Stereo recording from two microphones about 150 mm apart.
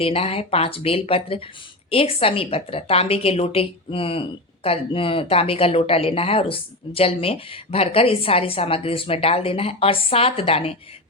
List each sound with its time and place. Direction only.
0.0 s a woman's voice: 40° left (ahead or behind)